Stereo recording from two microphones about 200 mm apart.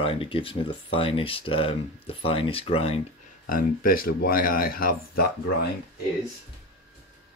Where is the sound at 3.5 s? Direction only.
45° left (ahead or behind).